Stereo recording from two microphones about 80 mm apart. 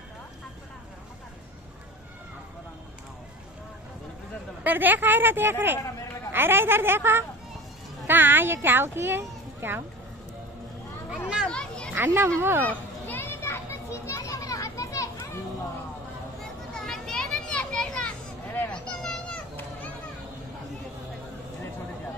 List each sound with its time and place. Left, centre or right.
4.6 s a child's voice: right
11.4 s a child's voice: centre
11.9 s a child's voice: right
12.6 s children playing: left
16.7 s children playing: centre
18.7 s a sound: centre